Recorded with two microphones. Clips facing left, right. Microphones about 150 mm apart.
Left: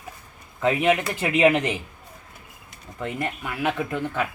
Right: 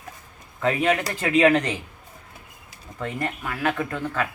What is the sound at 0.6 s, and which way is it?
Speech, 15° left (ahead or behind).